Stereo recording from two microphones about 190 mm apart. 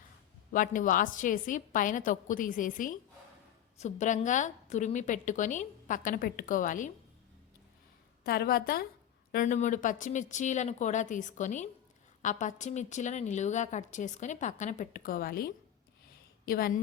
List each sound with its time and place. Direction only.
0.5 s a woman's voice: 45° left (ahead or behind)
8.2 s a woman's voice: 55° left (ahead or behind)
9.3 s a woman's voice: 40° left (ahead or behind)